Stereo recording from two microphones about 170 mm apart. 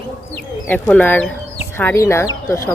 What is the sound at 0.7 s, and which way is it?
Speech, 10° left (ahead or behind).